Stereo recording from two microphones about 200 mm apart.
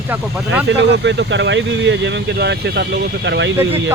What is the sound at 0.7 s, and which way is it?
Speech, 60° right (ahead or behind).